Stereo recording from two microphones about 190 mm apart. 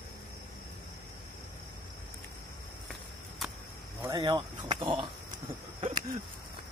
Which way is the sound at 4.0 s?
20° right (ahead or behind).